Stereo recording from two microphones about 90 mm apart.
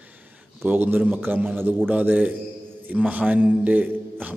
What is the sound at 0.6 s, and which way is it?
A man's voice, 20° right (ahead or behind).